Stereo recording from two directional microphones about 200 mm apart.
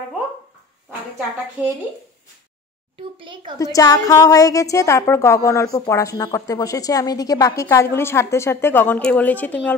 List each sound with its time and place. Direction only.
1.6 s speech: 10° right (ahead or behind)
3.0 s a child's voice: 25° right (ahead or behind)
3.5 s a woman's voice: 15° left (ahead or behind)